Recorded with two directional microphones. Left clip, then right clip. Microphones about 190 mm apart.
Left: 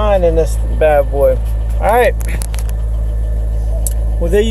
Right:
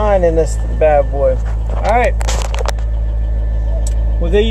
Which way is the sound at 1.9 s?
75° left (ahead or behind).